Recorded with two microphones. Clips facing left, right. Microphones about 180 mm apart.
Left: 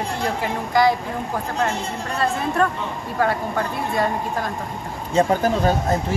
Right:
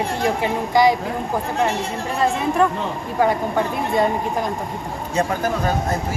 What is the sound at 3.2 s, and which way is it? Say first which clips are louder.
Speech: right 3 dB; 20° right (ahead or behind).